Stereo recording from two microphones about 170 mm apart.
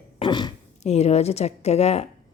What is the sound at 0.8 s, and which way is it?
A woman's voice, 40° left (ahead or behind).